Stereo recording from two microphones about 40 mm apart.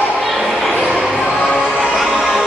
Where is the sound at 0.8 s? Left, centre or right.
Centre.